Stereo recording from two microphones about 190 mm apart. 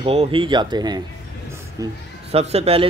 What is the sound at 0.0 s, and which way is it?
Speech, 30° right (ahead or behind).